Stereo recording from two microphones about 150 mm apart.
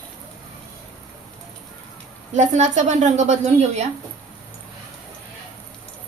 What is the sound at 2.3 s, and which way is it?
Speech, 55° right (ahead or behind).